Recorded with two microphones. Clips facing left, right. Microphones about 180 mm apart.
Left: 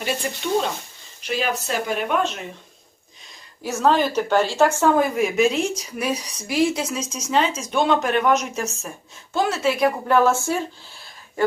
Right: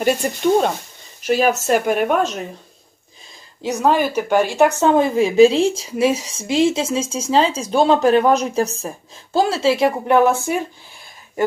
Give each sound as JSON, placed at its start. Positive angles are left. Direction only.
{"t": 0.0, "sound": "speech", "side_deg": -45}
{"t": 3.6, "sound": "a woman's voice", "side_deg": -15}